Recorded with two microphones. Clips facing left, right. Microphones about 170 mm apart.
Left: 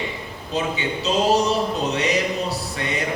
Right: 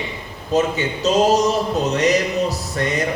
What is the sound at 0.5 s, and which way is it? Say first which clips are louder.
Speech: right 6 dB; 40° right (ahead or behind).